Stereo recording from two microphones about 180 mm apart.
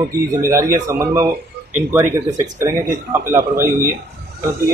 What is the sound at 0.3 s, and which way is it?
Speech, 15° right (ahead or behind).